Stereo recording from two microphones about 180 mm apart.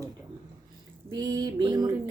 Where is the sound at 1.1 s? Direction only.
20° right (ahead or behind).